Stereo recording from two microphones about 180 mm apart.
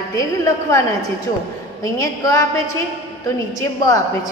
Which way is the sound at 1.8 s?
20° left (ahead or behind).